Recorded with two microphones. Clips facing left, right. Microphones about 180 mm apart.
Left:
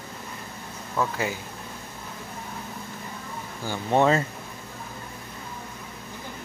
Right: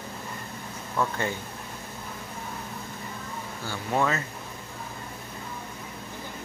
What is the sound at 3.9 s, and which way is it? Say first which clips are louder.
Speech: left 6 dB; 25° left (ahead or behind).